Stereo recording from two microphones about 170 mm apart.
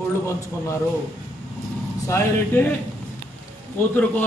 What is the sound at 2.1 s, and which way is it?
Speech, 15° left (ahead or behind).